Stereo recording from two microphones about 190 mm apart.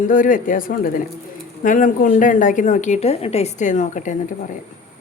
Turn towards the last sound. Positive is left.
turn(degrees=40)  # may be behind; listen again after turning